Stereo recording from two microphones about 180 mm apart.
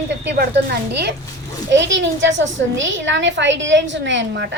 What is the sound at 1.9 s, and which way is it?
A woman's voice, 90° right.